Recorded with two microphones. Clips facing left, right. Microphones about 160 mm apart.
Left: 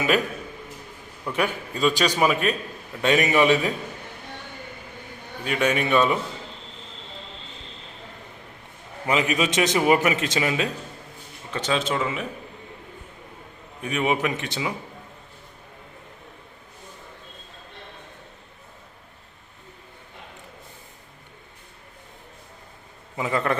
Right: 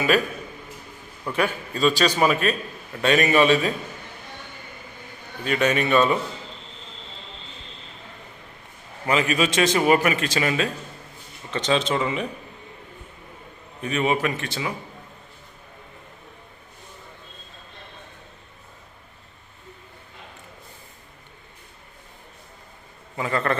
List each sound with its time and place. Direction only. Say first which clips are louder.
1.4 s a man's voice: right 1 dB; 15° left (ahead or behind)
5.5 s a man's voice: right 1 dB; 10° left (ahead or behind)
9.0 s a man's voice: right 1 dB; 15° left (ahead or behind)
13.8 s a man's voice: right 1 dB; 15° left (ahead or behind)
23.1 s a man's voice: even; 15° left (ahead or behind)